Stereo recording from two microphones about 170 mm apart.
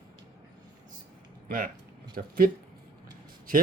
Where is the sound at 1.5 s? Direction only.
55° right (ahead or behind).